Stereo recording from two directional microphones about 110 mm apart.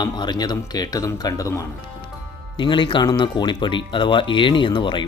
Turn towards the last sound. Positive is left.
turn(degrees=45)  # may be behind; listen again after turning